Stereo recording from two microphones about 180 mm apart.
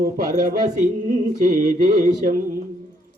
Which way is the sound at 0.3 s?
50° right (ahead or behind).